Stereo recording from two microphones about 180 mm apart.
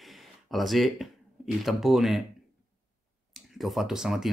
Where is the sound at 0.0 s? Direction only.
Centre (ahead or behind).